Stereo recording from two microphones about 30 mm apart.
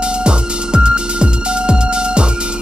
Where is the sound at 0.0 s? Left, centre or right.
Right.